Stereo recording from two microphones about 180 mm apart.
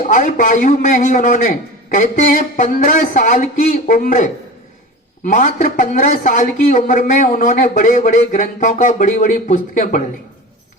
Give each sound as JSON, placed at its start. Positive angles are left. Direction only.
{"t": 0.0, "sound": "speech", "side_deg": 45}